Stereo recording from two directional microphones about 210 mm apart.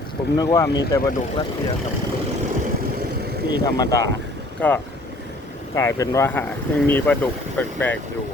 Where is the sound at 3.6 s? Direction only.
15° left (ahead or behind).